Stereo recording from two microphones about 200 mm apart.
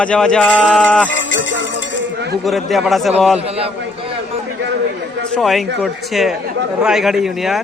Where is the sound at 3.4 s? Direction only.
30° right (ahead or behind).